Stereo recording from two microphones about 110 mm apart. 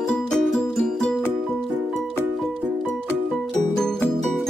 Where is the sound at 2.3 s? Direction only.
Centre (ahead or behind).